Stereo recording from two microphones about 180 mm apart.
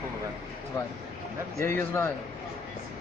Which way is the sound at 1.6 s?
15° left (ahead or behind).